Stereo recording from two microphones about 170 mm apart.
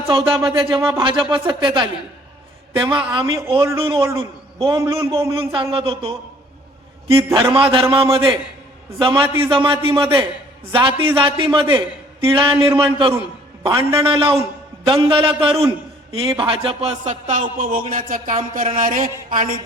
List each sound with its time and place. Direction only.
0.1 s a man's voice: 30° right (ahead or behind)
7.3 s a man's voice: 30° right (ahead or behind); by 19.5 s 55° right (ahead or behind)